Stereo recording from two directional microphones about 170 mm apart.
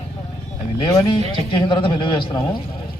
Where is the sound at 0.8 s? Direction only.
30° left (ahead or behind).